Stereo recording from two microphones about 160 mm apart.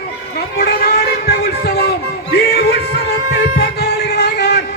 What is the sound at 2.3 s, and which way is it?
Music, 90° left.